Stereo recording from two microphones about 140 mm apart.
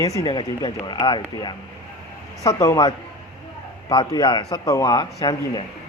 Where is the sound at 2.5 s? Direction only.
20° left (ahead or behind).